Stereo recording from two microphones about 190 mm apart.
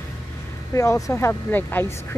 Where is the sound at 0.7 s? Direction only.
15° left (ahead or behind).